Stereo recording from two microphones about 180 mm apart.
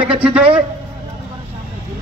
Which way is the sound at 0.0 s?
5° right (ahead or behind).